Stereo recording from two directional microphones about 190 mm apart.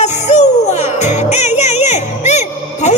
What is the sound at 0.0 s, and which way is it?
Music, 35° left (ahead or behind).